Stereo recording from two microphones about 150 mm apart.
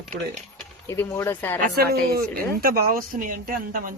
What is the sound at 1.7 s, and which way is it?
Speech, 90° right.